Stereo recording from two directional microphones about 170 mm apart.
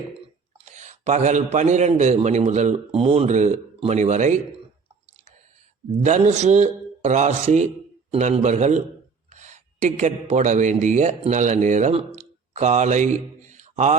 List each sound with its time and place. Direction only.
0.6 s a man's voice: 45° right (ahead or behind)
6.1 s a man's voice: 45° right (ahead or behind)
13.5 s mantra: 45° right (ahead or behind)